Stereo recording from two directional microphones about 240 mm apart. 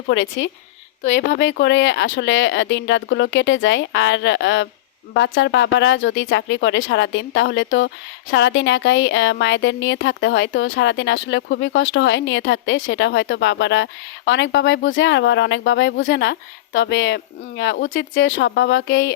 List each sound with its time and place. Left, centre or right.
0.1 s a woman's voice: left